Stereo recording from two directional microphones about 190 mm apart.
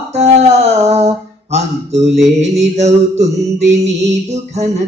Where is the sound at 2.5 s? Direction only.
35° right (ahead or behind).